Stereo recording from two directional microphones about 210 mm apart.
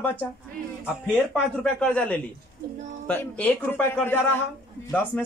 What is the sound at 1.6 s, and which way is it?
A man's voice, 5° left (ahead or behind).